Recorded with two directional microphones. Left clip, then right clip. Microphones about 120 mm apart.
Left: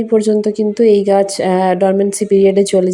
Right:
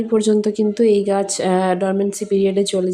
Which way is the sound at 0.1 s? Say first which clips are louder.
Left 4 dB; 5° left (ahead or behind).